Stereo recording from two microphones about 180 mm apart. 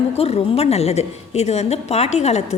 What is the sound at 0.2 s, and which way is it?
A woman's voice, 35° left (ahead or behind).